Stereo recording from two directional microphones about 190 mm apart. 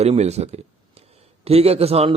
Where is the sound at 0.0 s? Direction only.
35° right (ahead or behind).